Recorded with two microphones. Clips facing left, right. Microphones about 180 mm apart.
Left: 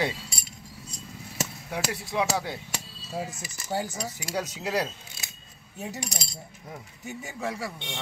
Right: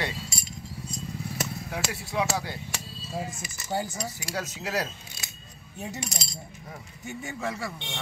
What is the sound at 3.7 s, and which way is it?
Speech, 5° left (ahead or behind).